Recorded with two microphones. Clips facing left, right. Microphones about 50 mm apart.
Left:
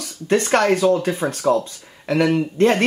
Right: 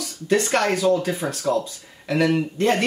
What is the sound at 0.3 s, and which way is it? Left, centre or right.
Speech, left.